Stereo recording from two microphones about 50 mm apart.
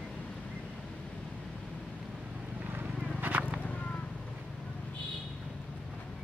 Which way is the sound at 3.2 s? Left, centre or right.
Right.